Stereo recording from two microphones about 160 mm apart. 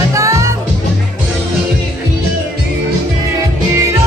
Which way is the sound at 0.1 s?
20° right (ahead or behind).